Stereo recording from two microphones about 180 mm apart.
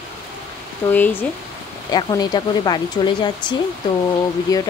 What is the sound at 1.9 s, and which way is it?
Speech, 20° left (ahead or behind).